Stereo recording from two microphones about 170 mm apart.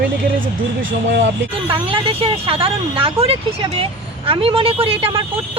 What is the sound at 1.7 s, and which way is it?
Speech, 30° right (ahead or behind).